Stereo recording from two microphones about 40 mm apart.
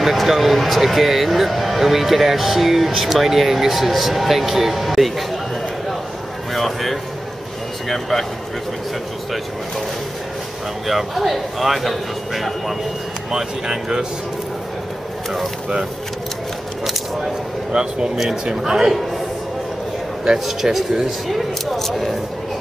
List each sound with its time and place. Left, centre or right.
0.0 s speech: centre
6.5 s speech: centre
10.9 s speech: centre
13.3 s speech: centre
17.7 s speech: centre
20.4 s speech: centre